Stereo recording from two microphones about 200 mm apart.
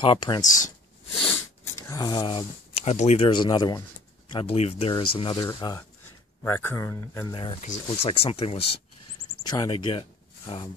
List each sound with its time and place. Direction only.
0.0 s speech: 25° left (ahead or behind)
1.2 s speech: 10° left (ahead or behind)
7.3 s speech: 25° left (ahead or behind)
7.6 s speech: 35° left (ahead or behind)